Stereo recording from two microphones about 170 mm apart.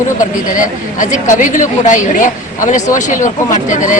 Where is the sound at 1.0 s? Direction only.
50° left (ahead or behind).